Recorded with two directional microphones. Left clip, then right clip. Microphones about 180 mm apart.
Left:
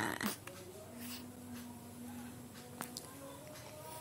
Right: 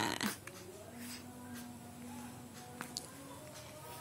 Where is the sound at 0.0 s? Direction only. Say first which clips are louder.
Right 2 dB; 20° right (ahead or behind).